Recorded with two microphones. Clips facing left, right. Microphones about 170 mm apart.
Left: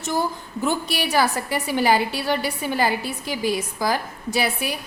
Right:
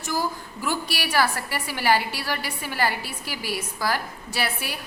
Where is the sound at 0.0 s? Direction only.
25° left (ahead or behind).